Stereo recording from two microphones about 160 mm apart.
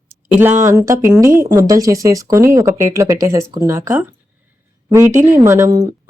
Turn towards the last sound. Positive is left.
turn(degrees=-20)  # may be behind; listen again after turning